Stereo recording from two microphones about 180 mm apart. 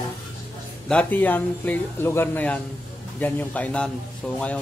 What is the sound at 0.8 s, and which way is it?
Speech, 10° left (ahead or behind).